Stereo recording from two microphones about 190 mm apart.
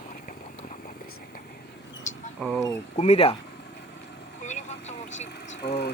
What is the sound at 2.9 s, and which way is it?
Speech, 35° left (ahead or behind).